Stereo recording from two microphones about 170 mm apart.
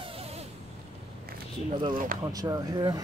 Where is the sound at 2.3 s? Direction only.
20° right (ahead or behind).